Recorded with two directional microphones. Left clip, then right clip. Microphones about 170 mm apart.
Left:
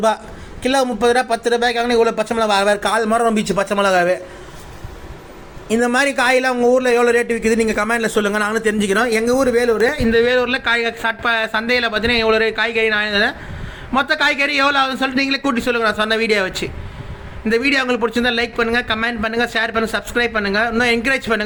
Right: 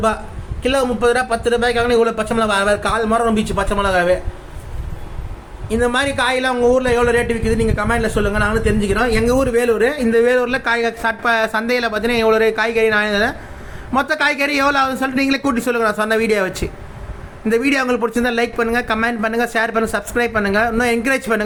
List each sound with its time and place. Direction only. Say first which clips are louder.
0.6 s speech: even; 35° left (ahead or behind)
5.6 s a man's voice: left 1 dB; 40° left (ahead or behind); by 9.0 s 55° left (ahead or behind)
9.0 s speech: right 1 dB; 35° left (ahead or behind)
9.5 s a man's voice: even; centre (ahead or behind)